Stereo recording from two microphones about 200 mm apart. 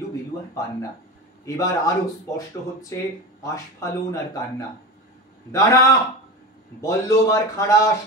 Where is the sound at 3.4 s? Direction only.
15° left (ahead or behind).